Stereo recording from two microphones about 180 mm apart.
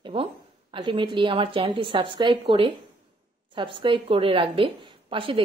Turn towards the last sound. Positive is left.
turn(degrees=-30)  # may be behind; listen again after turning